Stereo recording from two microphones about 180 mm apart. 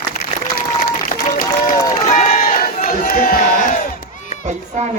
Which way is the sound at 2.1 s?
40° left (ahead or behind).